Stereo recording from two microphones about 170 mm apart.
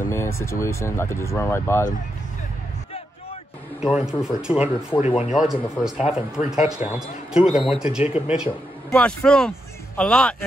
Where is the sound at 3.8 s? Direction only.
5° right (ahead or behind).